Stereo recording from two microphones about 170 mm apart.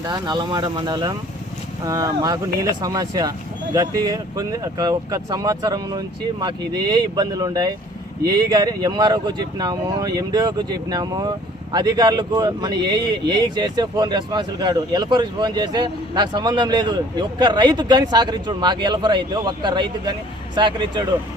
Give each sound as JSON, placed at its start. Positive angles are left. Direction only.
{"t": 0.0, "sound": "speech", "side_deg": -25}